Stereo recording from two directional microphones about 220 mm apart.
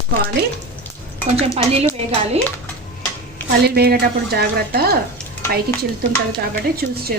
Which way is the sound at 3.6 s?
45° right (ahead or behind).